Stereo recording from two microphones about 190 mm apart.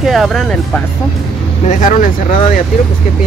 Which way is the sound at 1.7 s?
40° left (ahead or behind).